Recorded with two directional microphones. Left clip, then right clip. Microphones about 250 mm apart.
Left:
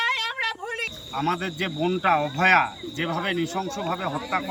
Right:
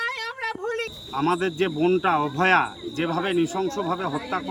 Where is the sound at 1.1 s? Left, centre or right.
Centre.